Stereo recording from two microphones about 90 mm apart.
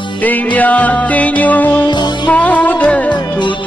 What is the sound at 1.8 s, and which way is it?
Music, 55° left (ahead or behind).